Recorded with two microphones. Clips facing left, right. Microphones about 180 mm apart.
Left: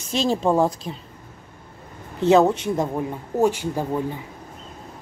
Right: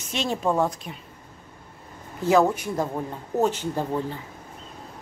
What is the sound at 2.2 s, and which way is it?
Speech, 25° left (ahead or behind).